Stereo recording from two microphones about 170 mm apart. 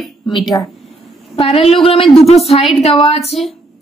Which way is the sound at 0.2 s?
25° left (ahead or behind).